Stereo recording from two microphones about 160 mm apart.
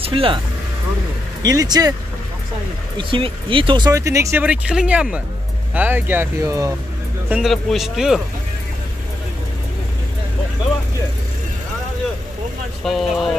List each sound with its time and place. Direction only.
0.0 s speech: 35° right (ahead or behind)
1.4 s speech: 25° right (ahead or behind)
3.0 s speech: 35° right (ahead or behind)
7.2 s speech: 5° right (ahead or behind)
12.8 s speech: centre (ahead or behind)